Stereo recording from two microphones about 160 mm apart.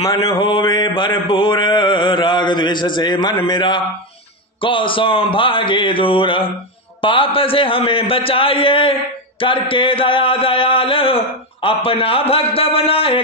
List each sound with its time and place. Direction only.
0.2 s mantra: 30° left (ahead or behind)
4.6 s a man's voice: 35° left (ahead or behind)